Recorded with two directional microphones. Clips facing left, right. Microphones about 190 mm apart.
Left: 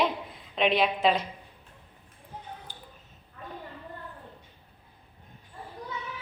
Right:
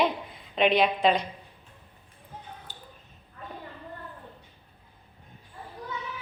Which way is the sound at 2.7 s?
15° left (ahead or behind).